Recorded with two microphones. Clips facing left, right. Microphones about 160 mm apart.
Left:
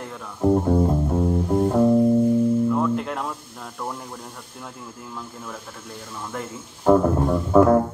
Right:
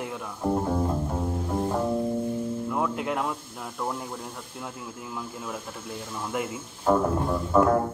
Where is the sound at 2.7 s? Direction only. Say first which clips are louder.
Left 5 dB; 5° right (ahead or behind).